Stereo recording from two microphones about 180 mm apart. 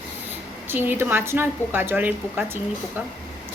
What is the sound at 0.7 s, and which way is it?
A woman's voice, 10° right (ahead or behind).